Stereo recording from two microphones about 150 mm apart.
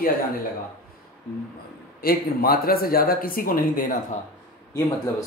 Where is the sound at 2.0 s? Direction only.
90° left; by 3.8 s 70° left (ahead or behind).